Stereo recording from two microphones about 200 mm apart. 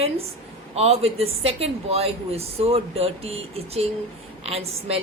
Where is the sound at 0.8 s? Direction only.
30° right (ahead or behind).